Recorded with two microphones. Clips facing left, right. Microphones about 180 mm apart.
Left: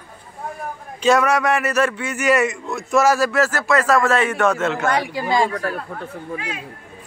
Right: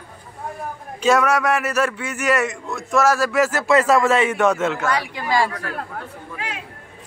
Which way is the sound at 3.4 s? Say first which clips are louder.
Right 2 dB; 20° right (ahead or behind).